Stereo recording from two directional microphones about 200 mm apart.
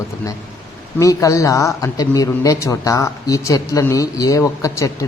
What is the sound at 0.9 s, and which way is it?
Speech, 15° left (ahead or behind).